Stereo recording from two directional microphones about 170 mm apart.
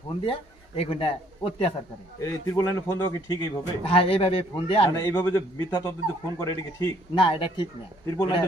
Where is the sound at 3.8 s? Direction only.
35° left (ahead or behind).